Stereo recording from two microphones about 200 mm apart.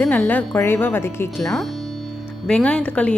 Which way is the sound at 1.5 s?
Centre (ahead or behind).